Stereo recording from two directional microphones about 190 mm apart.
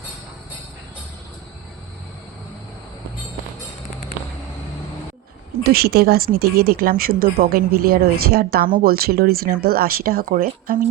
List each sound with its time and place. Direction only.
5.6 s speech: 55° right (ahead or behind)